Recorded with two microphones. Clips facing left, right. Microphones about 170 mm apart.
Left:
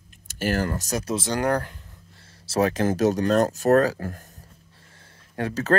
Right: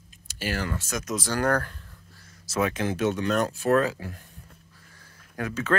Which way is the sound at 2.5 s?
35° left (ahead or behind).